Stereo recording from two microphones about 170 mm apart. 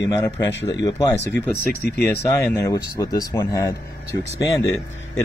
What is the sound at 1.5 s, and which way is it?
Speech, 60° left (ahead or behind).